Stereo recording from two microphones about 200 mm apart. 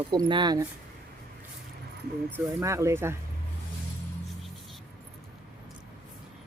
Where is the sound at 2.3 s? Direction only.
15° right (ahead or behind).